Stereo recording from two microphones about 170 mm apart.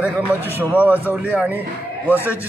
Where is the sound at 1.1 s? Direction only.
5° right (ahead or behind).